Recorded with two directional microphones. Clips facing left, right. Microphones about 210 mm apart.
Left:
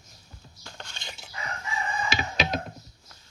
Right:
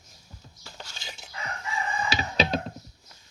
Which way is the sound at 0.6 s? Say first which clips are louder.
Even; 5° right (ahead or behind).